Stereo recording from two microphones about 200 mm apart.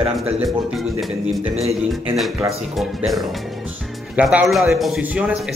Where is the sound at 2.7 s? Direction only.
Centre (ahead or behind).